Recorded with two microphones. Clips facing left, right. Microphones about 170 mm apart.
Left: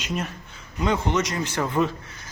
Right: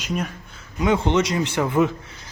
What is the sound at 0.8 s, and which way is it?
A man's voice, 20° right (ahead or behind).